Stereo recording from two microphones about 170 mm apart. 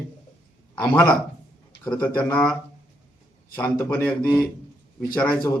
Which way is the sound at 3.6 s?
10° left (ahead or behind).